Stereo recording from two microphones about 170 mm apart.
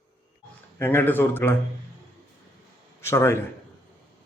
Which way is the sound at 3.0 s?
15° left (ahead or behind).